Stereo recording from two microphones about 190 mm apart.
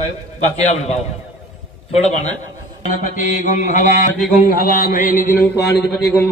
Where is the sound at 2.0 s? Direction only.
35° left (ahead or behind).